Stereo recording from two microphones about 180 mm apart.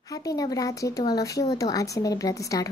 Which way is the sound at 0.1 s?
20° left (ahead or behind).